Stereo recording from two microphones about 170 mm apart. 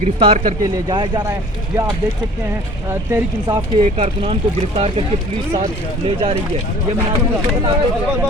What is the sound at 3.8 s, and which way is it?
Speech, 35° right (ahead or behind).